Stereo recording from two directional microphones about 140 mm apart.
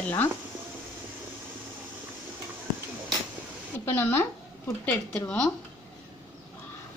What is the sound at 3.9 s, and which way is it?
Speech, 15° left (ahead or behind).